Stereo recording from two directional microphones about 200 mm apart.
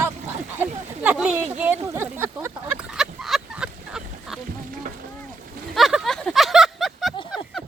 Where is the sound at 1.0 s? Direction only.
5° right (ahead or behind).